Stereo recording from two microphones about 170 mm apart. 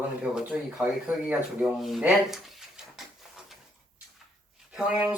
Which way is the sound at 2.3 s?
Centre (ahead or behind).